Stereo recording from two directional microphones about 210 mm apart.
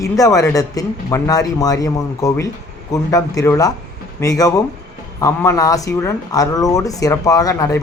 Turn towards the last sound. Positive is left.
turn(degrees=15)  # may be behind; listen again after turning